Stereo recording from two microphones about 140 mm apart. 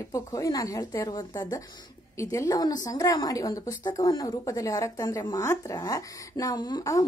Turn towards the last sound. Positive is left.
turn(degrees=25)  # may be behind; listen again after turning